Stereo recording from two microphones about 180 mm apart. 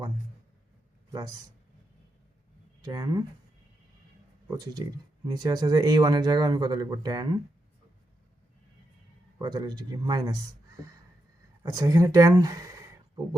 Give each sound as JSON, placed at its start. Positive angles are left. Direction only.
{"t": 2.8, "sound": "speech", "side_deg": -20}
{"t": 4.4, "sound": "speech", "side_deg": -20}
{"t": 9.4, "sound": "speech", "side_deg": -20}
{"t": 11.6, "sound": "speech", "side_deg": -20}